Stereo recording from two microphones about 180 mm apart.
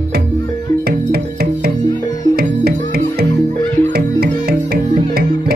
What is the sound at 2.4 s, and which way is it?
Music, 60° right (ahead or behind).